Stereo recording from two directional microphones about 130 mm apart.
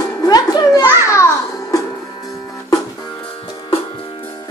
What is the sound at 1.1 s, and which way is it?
Music, 20° left (ahead or behind).